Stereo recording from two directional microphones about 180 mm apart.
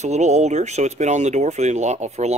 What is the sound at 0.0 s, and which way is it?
Speech, 40° right (ahead or behind).